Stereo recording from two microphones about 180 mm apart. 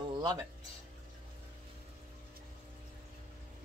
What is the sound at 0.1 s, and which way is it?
Music, 25° right (ahead or behind).